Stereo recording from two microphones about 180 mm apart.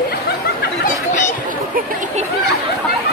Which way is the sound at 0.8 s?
45° left (ahead or behind).